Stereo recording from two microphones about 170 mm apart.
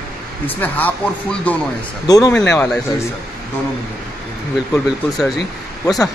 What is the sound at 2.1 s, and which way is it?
Speech, 20° left (ahead or behind).